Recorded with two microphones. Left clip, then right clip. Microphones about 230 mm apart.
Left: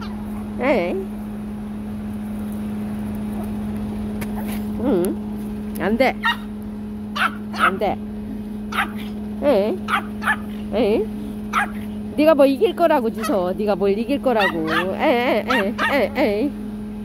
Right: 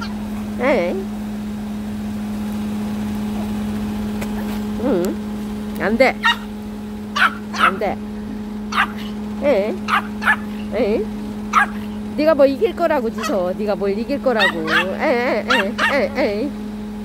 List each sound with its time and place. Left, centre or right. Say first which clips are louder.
0.6 s speech: right 2 dB; centre
4.8 s a sound: right 1 dB; centre
5.8 s speech: right 3 dB; centre
7.2 s dog: right 4 dB; centre
9.4 s fowl: right 1 dB; centre
9.8 s speech: right 4 dB; centre
10.7 s speech: even; centre
11.6 s speech: right 6 dB; centre
12.2 s fowl: even; centre
14.4 s speech: right 3 dB; centre
15.0 s fowl: even; centre